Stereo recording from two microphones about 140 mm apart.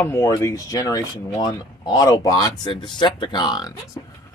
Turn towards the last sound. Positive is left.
turn(degrees=30)  # may be behind; listen again after turning